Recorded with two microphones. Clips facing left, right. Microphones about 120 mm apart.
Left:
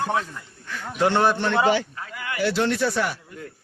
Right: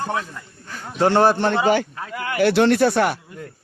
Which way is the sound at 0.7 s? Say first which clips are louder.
Right 4 dB; 35° right (ahead or behind).